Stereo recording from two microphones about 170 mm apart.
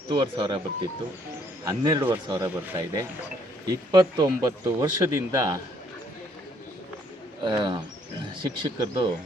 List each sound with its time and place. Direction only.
0.1 s speech: 30° right (ahead or behind)
7.4 s speech: 25° right (ahead or behind)